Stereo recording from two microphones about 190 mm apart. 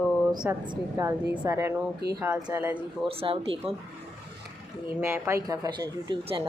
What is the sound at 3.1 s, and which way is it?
Speech, 30° right (ahead or behind).